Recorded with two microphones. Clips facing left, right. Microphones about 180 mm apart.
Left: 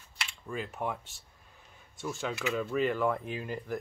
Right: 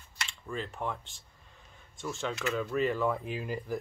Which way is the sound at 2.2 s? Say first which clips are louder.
Even; 5° left (ahead or behind).